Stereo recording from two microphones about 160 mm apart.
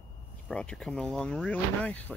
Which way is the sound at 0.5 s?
5° left (ahead or behind).